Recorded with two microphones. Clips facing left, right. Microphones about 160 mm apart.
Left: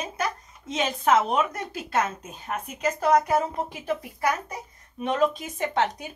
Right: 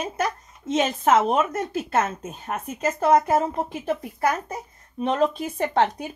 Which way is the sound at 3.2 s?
45° right (ahead or behind).